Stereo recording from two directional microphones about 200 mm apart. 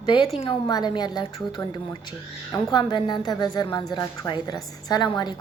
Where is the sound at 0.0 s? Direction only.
25° left (ahead or behind).